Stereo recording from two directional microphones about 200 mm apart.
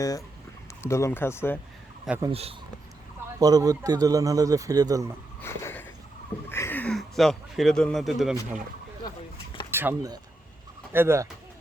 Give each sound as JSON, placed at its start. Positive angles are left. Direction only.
{"t": 0.0, "sound": "speech", "side_deg": 15}
{"t": 2.0, "sound": "speech", "side_deg": -10}
{"t": 2.3, "sound": "speech", "side_deg": -30}
{"t": 3.3, "sound": "speech", "side_deg": -20}
{"t": 5.4, "sound": "a sound", "side_deg": 10}
{"t": 6.5, "sound": "speech", "side_deg": 10}
{"t": 9.7, "sound": "speech", "side_deg": -15}